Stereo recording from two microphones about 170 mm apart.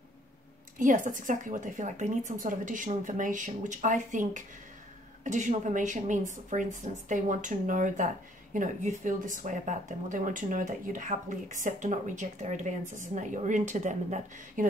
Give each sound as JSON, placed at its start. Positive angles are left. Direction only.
{"t": 0.7, "sound": "speech", "side_deg": -50}